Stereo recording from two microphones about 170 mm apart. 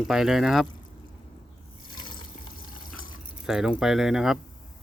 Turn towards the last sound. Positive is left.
turn(degrees=0)  # may be behind; listen again after turning